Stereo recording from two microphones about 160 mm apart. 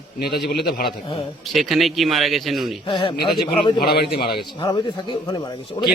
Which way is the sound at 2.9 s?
30° left (ahead or behind).